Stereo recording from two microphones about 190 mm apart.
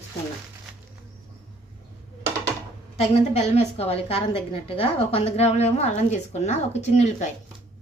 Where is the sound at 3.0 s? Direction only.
35° left (ahead or behind).